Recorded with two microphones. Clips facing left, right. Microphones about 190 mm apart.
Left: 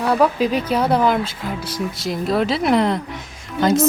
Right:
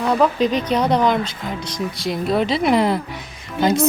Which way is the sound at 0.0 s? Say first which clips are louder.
Even; 5° left (ahead or behind).